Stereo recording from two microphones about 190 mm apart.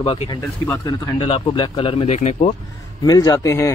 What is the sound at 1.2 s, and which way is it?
Speech, 30° left (ahead or behind).